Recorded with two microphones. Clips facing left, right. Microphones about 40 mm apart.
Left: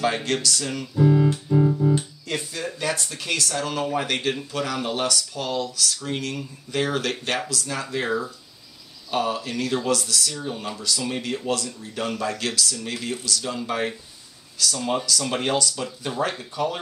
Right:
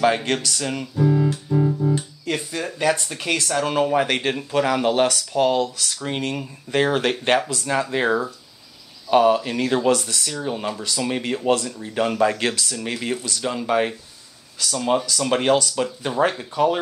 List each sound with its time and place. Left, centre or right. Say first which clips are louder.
0.0 s speech: right 4 dB; centre
0.9 s music: left 1 dB; centre
2.3 s speech: right 1 dB; centre